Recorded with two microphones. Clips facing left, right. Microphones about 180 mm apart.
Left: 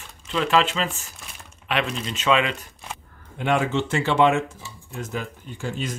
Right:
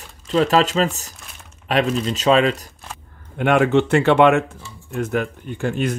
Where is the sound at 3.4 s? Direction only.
60° right (ahead or behind).